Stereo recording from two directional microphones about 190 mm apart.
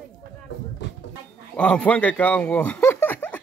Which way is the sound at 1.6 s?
5° left (ahead or behind).